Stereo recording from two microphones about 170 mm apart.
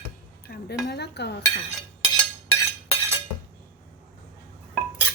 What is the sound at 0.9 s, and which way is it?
Cutlery, 75° left (ahead or behind).